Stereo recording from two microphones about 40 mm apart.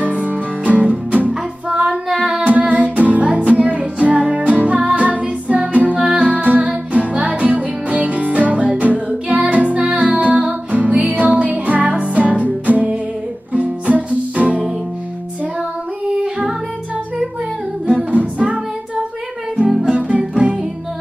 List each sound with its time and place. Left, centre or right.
0.2 s music: right
2.4 s music: right
16.2 s music: right
17.8 s singing: right
19.8 s music: right